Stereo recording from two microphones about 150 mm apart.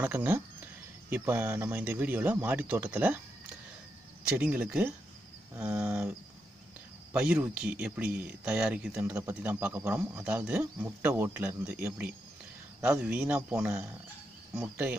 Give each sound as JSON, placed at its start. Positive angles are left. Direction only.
{"t": 0.0, "sound": "speech", "side_deg": -10}
{"t": 4.4, "sound": "speech", "side_deg": -5}
{"t": 8.9, "sound": "speech", "side_deg": -15}